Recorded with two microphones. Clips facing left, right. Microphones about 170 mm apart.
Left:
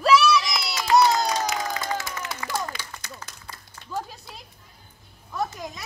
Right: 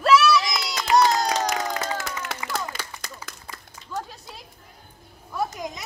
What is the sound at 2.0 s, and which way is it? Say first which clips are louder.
Clapping: right 1 dB; 65° right (ahead or behind).